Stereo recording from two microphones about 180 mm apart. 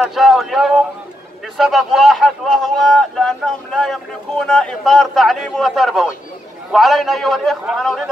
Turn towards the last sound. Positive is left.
turn(degrees=0)  # may be behind; listen again after turning